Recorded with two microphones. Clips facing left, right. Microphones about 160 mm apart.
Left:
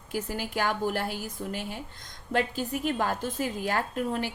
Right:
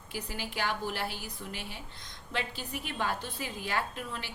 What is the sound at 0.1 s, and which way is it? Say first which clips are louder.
A woman's voice: left 7 dB; 45° left (ahead or behind).